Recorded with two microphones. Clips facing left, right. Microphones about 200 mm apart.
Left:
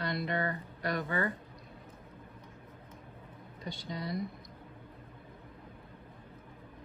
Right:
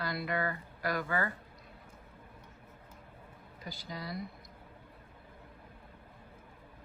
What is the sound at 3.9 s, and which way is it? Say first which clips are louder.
Speech: left 4 dB; 25° left (ahead or behind).